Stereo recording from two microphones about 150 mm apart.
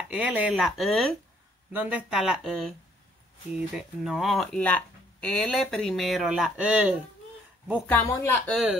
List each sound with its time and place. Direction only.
0.1 s speech: 10° right (ahead or behind)
1.7 s speech: 10° right (ahead or behind)
8.0 s speech: 20° left (ahead or behind)
8.5 s speech: centre (ahead or behind)